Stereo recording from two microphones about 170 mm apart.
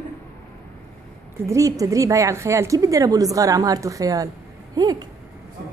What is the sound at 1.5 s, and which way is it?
A woman's voice, 20° right (ahead or behind).